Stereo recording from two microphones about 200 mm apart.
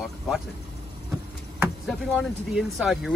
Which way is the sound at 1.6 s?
Centre (ahead or behind).